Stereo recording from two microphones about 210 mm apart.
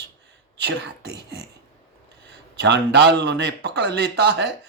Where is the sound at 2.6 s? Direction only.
55° right (ahead or behind).